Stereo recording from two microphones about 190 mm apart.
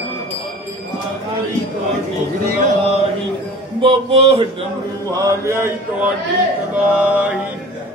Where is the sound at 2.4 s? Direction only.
55° right (ahead or behind).